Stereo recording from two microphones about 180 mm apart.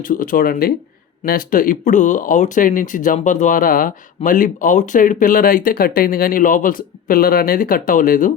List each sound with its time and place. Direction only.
0.0 s speech: 50° left (ahead or behind)